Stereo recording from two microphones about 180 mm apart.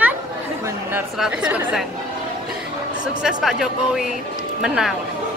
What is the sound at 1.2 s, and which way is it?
Speech, 5° right (ahead or behind).